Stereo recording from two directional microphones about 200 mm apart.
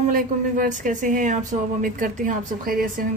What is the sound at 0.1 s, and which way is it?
A woman's voice, 40° right (ahead or behind).